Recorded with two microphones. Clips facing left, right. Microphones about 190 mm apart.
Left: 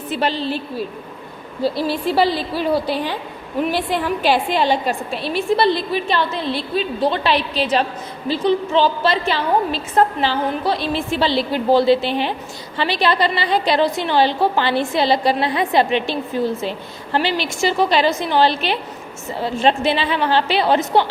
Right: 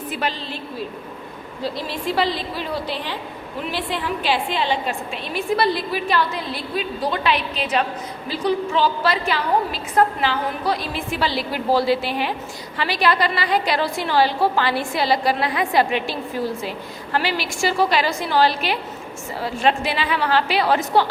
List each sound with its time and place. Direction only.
0.1 s a woman's voice: 30° left (ahead or behind)
1.6 s a woman's voice: 5° left (ahead or behind)
3.7 s a woman's voice: 45° left (ahead or behind); by 21.1 s 25° left (ahead or behind)